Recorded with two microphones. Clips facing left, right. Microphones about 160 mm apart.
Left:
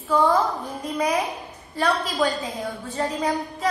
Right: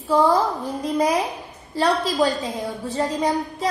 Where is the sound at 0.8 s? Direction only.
35° right (ahead or behind).